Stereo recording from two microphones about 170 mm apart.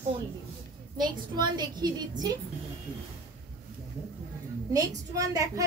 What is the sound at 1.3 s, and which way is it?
Speech, 25° right (ahead or behind).